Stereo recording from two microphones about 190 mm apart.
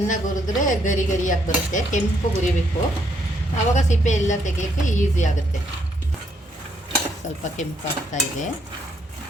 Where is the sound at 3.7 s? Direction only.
40° left (ahead or behind).